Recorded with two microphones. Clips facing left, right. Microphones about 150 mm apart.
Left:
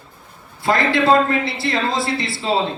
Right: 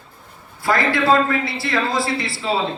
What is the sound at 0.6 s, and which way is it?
A man's voice, 25° left (ahead or behind).